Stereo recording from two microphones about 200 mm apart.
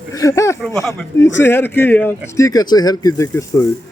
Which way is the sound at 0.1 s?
15° left (ahead or behind).